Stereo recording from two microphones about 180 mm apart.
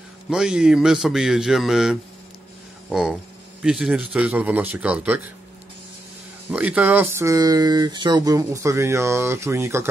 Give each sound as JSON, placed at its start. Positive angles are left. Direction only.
{"t": 0.3, "sound": "speech", "side_deg": -5}
{"t": 6.5, "sound": "speech", "side_deg": -10}